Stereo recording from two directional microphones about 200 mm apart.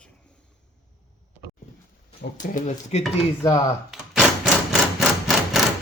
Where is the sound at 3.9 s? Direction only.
Centre (ahead or behind).